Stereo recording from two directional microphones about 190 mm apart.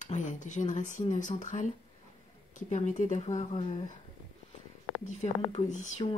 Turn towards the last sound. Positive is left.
turn(degrees=40)  # may be behind; listen again after turning